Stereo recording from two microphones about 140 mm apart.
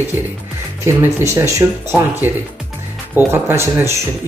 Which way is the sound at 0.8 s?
20° right (ahead or behind).